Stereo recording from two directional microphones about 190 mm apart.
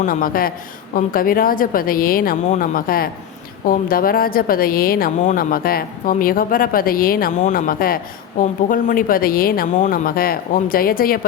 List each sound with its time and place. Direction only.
0.0 s a woman's voice: 45° left (ahead or behind)